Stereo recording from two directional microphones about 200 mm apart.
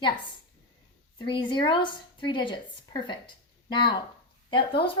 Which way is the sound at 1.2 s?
25° left (ahead or behind).